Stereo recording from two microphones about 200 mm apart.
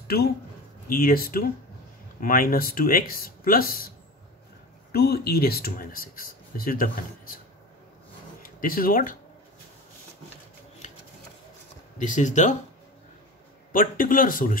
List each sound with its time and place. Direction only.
0.8 s speech: 45° left (ahead or behind)
4.9 s speech: 50° left (ahead or behind)
8.4 s speech: 45° left (ahead or behind)
12.0 s speech: 40° left (ahead or behind)
13.7 s speech: 45° left (ahead or behind)